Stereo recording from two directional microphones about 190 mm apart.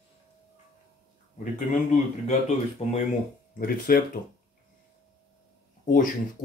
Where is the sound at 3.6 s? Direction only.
50° left (ahead or behind).